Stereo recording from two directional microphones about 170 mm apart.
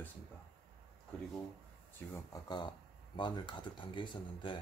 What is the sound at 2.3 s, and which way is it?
Speech, 25° left (ahead or behind).